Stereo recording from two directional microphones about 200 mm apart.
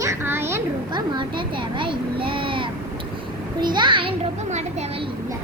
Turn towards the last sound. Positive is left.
turn(degrees=-35)  # may be behind; listen again after turning